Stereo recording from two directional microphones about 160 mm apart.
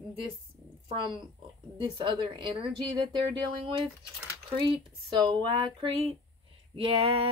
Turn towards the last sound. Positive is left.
turn(degrees=-35)  # may be behind; listen again after turning